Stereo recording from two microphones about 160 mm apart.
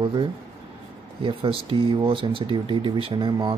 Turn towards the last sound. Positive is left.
turn(degrees=-30)  # may be behind; listen again after turning